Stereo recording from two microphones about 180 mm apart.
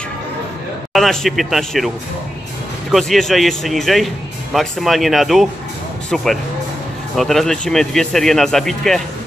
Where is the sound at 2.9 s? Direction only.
Centre (ahead or behind).